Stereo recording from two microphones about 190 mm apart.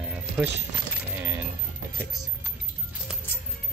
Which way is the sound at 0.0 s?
5° right (ahead or behind).